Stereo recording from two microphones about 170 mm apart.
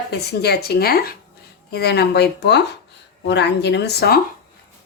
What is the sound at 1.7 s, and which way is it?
A woman's voice, 70° left (ahead or behind).